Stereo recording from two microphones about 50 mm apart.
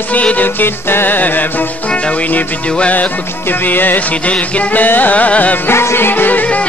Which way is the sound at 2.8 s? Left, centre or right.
Left.